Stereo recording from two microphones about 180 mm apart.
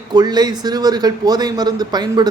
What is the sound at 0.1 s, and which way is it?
A man's voice, 20° right (ahead or behind).